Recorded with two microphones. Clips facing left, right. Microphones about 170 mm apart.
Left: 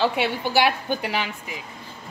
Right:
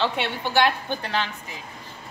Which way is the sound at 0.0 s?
10° left (ahead or behind).